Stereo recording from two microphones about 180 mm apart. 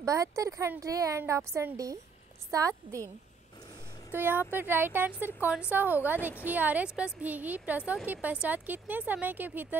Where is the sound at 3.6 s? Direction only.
20° left (ahead or behind).